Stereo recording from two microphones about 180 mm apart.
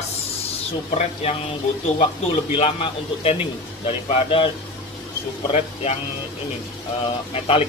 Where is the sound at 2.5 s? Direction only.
35° left (ahead or behind).